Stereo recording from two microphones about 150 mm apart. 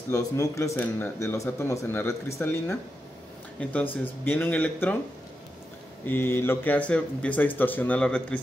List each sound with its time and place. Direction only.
0.1 s speech: 20° left (ahead or behind)
3.9 s speech: 15° left (ahead or behind)
6.0 s speech: 15° left (ahead or behind)